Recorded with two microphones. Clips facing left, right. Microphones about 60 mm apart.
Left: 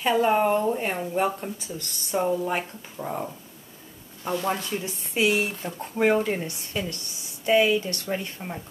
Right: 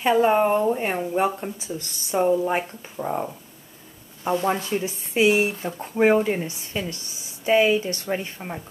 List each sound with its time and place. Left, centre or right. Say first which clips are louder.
0.0 s speech: right 3 dB; centre